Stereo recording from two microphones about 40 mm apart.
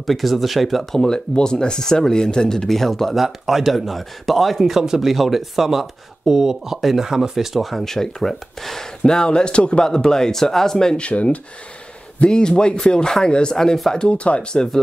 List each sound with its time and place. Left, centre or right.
0.0 s speech: centre
1.0 s speech: centre
3.2 s speech: centre
9.0 s speech: centre
9.8 s speech: centre
11.0 s speech: left
13.9 s speech: left
14.5 s speech: centre